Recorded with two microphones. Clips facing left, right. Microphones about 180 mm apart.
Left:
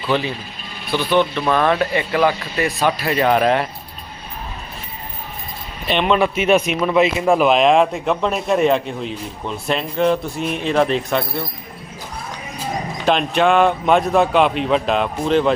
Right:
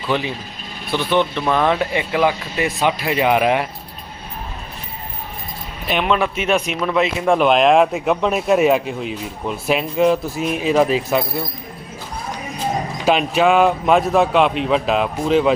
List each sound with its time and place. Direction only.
0.1 s speech: 15° right (ahead or behind)
5.9 s speech: 5° right (ahead or behind)
13.1 s speech: 5° right (ahead or behind)